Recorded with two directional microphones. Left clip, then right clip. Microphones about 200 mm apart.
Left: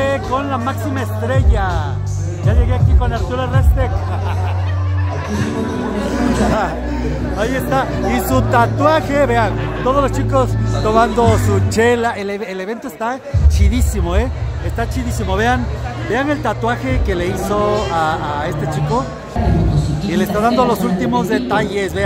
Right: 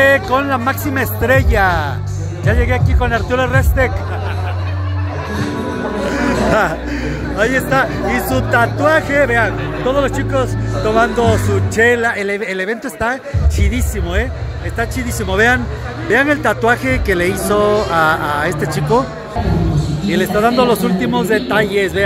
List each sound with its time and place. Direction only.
0.0 s speech: 10° right (ahead or behind)
6.0 s speech: 5° right (ahead or behind)
8.1 s speech: 10° left (ahead or behind)
13.7 s speech: 15° left (ahead or behind)
14.8 s a man's voice: centre (ahead or behind)
20.1 s a man's voice: centre (ahead or behind)